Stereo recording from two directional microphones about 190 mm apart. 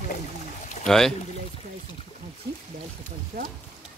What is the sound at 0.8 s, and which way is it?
Speech, centre (ahead or behind).